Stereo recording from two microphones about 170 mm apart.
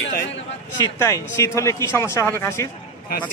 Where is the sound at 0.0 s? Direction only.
75° left (ahead or behind).